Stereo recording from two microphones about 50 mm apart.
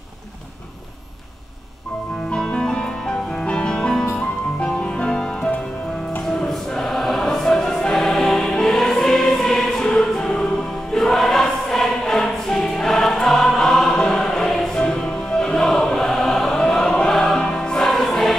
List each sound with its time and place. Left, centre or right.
2.3 s music: centre
6.2 s choir: centre
14.8 s music: centre